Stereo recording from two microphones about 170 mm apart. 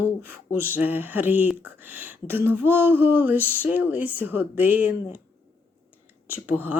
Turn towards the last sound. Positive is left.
turn(degrees=-10)  # may be behind; listen again after turning